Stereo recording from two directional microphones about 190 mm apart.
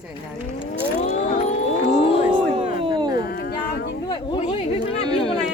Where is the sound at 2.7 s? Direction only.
25° right (ahead or behind).